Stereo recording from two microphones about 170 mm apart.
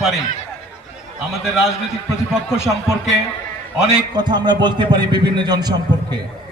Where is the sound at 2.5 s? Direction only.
15° left (ahead or behind).